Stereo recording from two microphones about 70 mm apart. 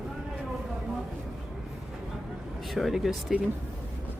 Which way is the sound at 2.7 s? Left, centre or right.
Centre.